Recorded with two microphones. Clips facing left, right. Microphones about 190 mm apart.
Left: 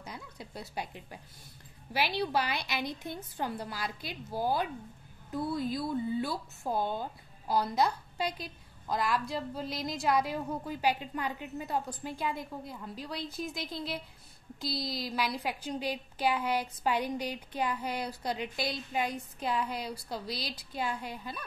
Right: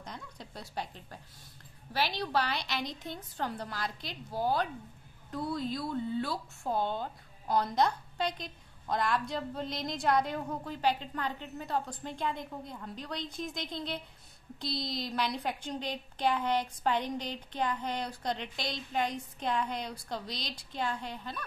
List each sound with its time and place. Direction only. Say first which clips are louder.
0.0 s a woman's voice: left 1 dB; 10° left (ahead or behind)